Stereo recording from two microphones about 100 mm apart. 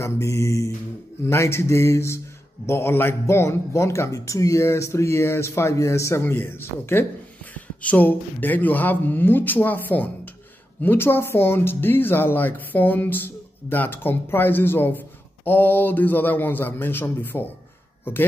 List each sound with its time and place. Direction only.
0.0 s speech: 30° left (ahead or behind)